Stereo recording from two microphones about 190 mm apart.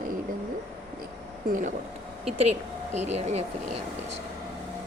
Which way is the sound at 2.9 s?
35° right (ahead or behind).